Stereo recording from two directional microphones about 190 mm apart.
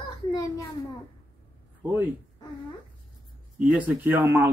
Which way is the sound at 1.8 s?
10° right (ahead or behind).